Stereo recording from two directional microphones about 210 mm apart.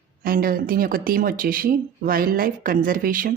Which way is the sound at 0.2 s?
45° right (ahead or behind).